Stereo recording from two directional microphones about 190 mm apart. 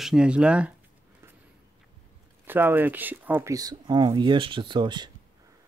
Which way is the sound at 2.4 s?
10° right (ahead or behind).